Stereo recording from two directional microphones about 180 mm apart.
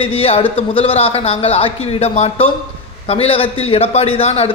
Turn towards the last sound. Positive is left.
turn(degrees=35)  # may be behind; listen again after turning